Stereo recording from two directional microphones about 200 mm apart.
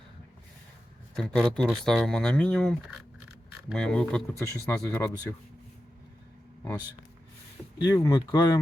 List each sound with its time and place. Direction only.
1.1 s speech: 5° left (ahead or behind)
7.9 s speech: 20° left (ahead or behind)